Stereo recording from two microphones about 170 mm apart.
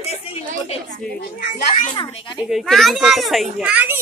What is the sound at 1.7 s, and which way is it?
Speech, 35° left (ahead or behind).